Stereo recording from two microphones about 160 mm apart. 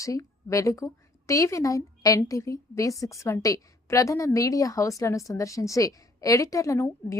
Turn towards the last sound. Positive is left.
turn(degrees=20)  # may be behind; listen again after turning